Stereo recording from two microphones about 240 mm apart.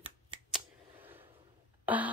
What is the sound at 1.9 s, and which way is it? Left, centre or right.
Speech, centre.